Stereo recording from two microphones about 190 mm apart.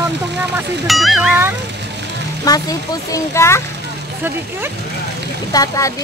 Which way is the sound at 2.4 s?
20° left (ahead or behind).